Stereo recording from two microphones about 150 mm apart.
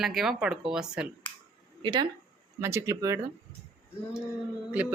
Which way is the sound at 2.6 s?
20° right (ahead or behind).